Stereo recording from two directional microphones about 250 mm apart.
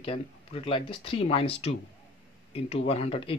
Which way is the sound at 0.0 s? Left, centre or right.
Left.